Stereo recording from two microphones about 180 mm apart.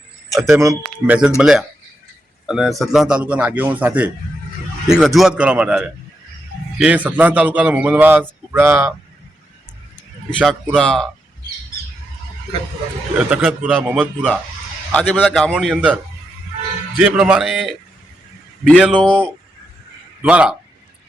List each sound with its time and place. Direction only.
0.4 s a man's voice: 15° right (ahead or behind)
10.2 s a man's voice: centre (ahead or behind)
13.1 s a man's voice: 10° right (ahead or behind)
17.0 s a man's voice: 5° right (ahead or behind)
18.9 s speech: 5° left (ahead or behind)
20.2 s a man's voice: 5° right (ahead or behind)